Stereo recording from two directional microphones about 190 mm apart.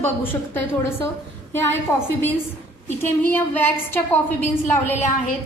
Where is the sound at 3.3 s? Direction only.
10° left (ahead or behind).